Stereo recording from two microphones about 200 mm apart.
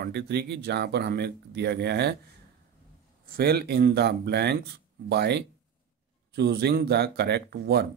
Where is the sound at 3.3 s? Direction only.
50° right (ahead or behind).